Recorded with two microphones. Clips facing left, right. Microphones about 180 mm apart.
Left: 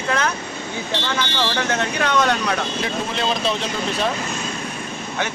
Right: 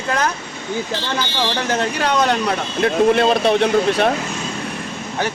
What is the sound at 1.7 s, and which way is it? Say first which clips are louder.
Speech: right 2 dB; 35° right (ahead or behind).